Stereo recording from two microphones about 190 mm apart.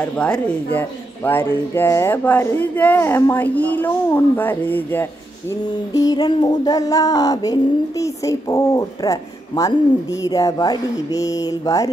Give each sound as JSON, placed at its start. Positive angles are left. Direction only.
{"t": 0.0, "sound": "speech", "side_deg": 5}
{"t": 5.7, "sound": "music", "side_deg": 20}